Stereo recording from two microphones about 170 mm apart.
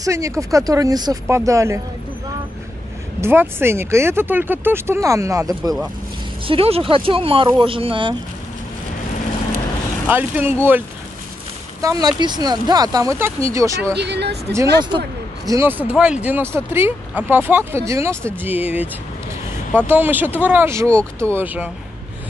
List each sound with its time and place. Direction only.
0.0 s speech: 20° right (ahead or behind)
3.2 s speech: 15° right (ahead or behind)
6.4 s speech: 35° right (ahead or behind)
10.0 s speech: 10° right (ahead or behind)
11.8 s speech: 20° right (ahead or behind)
13.9 s speech: 80° right
15.4 s speech: 15° right (ahead or behind)